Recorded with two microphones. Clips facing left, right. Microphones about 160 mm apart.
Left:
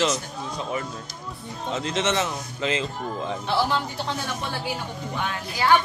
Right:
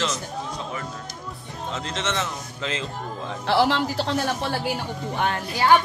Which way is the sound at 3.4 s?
90° right.